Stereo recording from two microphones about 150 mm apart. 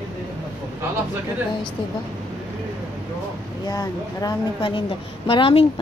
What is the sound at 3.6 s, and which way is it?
A woman's voice, 25° left (ahead or behind).